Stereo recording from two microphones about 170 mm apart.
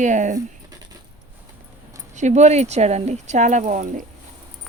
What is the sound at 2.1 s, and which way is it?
Speech, 45° right (ahead or behind).